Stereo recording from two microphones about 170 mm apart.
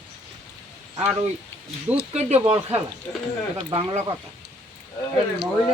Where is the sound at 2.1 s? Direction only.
35° right (ahead or behind).